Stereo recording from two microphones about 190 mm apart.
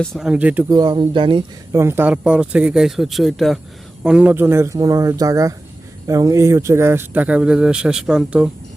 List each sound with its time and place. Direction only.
0.0 s speech: centre (ahead or behind)
0.7 s speech: 25° right (ahead or behind); by 8.4 s 5° right (ahead or behind)